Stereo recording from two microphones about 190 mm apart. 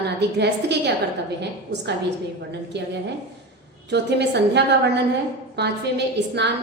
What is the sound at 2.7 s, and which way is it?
A woman's voice, 60° right (ahead or behind).